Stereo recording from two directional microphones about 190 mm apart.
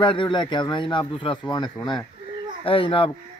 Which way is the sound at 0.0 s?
25° left (ahead or behind).